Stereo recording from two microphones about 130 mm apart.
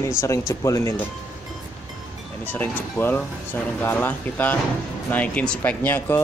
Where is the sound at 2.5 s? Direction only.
15° left (ahead or behind).